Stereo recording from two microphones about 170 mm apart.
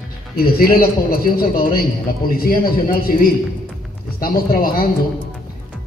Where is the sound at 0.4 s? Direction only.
60° left (ahead or behind).